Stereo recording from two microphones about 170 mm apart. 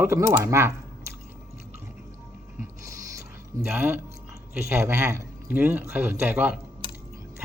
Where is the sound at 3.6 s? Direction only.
10° right (ahead or behind).